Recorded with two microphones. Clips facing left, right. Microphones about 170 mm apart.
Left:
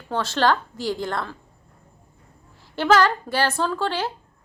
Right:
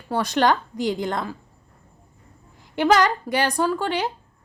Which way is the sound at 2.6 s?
15° right (ahead or behind).